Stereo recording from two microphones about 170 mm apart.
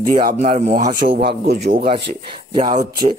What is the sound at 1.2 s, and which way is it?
Speech, 70° right (ahead or behind).